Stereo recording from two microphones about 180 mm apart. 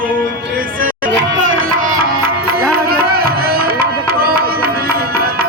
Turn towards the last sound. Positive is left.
turn(degrees=-55)  # may be behind; listen again after turning